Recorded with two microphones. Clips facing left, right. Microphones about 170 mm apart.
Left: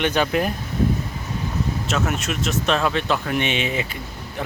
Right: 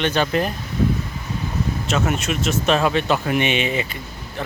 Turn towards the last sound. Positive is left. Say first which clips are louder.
# right 2 dB
turn(degrees=0)  # may be behind; listen again after turning